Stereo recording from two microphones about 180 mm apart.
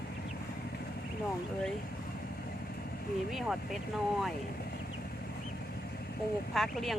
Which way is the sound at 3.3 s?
Centre (ahead or behind).